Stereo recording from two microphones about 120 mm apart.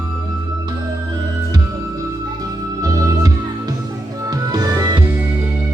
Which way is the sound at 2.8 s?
30° right (ahead or behind).